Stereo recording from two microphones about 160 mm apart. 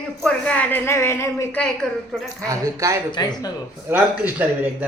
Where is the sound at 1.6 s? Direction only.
Centre (ahead or behind).